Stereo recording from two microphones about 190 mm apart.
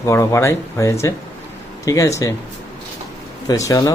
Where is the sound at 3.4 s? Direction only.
15° left (ahead or behind).